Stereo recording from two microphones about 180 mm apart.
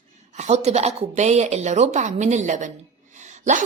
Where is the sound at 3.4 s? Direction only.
45° right (ahead or behind).